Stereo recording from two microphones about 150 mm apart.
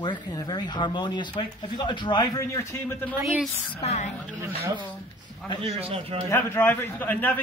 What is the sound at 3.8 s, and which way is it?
Speech, 50° left (ahead or behind).